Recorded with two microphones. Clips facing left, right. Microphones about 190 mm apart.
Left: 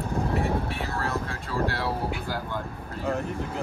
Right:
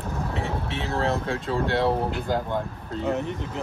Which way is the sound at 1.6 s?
25° right (ahead or behind).